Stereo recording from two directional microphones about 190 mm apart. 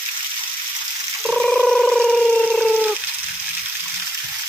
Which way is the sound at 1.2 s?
Centre (ahead or behind).